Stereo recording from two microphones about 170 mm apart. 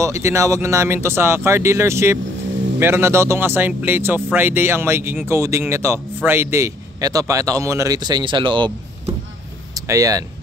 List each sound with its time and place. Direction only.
0.0 s speech: 15° right (ahead or behind)
9.8 s speech: 20° right (ahead or behind)